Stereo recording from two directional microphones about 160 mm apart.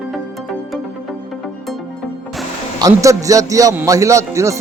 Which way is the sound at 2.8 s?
20° right (ahead or behind).